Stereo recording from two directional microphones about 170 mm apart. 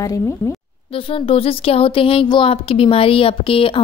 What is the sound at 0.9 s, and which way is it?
Speech, 35° left (ahead or behind).